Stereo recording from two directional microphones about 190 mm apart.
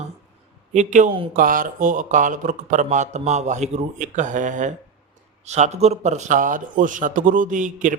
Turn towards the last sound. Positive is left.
turn(degrees=-45)  # may be behind; listen again after turning